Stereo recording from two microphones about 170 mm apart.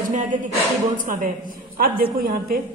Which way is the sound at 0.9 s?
50° right (ahead or behind).